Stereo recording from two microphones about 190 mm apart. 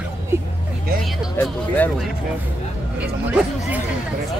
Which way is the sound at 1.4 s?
10° left (ahead or behind).